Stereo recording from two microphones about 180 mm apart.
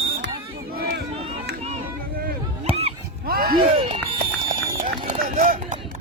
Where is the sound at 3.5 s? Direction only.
30° right (ahead or behind).